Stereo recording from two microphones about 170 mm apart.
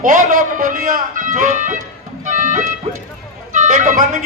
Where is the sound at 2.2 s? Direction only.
50° right (ahead or behind).